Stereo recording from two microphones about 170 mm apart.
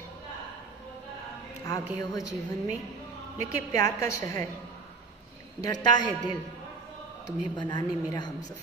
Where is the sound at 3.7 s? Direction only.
20° left (ahead or behind).